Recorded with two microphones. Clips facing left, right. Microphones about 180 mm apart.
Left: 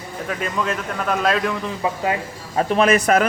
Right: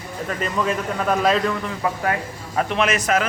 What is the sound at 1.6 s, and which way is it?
A man's voice, 20° left (ahead or behind).